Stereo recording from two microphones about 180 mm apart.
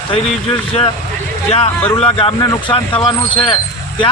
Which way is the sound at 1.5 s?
35° left (ahead or behind).